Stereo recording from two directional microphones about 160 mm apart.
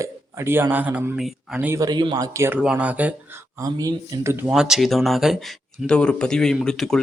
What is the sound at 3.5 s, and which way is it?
Speech, 25° right (ahead or behind).